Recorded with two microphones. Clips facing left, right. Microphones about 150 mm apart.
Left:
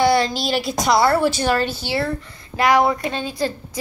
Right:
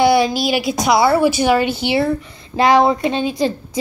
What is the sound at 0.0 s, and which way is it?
A woman's voice, 10° right (ahead or behind).